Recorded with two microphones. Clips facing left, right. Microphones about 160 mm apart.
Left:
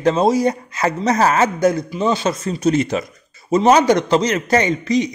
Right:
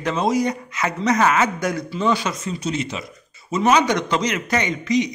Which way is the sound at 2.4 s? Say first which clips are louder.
Left 11 dB; 45° left (ahead or behind).